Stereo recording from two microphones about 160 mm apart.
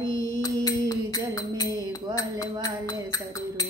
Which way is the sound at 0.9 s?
20° left (ahead or behind).